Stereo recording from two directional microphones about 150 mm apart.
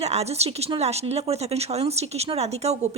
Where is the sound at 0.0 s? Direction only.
45° right (ahead or behind).